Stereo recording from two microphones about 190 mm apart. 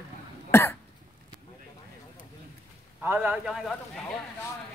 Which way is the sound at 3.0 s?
10° right (ahead or behind).